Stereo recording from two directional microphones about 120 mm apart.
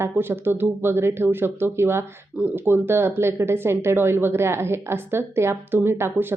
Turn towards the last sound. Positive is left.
turn(degrees=-20)  # may be behind; listen again after turning